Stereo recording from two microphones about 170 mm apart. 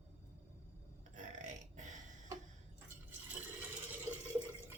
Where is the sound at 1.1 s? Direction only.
45° right (ahead or behind).